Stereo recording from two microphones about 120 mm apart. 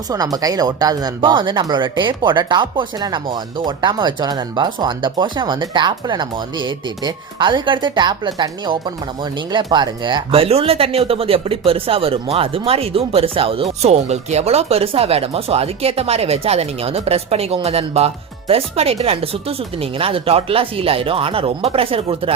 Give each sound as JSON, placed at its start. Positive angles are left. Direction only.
{"t": 0.1, "sound": "speech", "side_deg": -30}
{"t": 13.8, "sound": "speech", "side_deg": -60}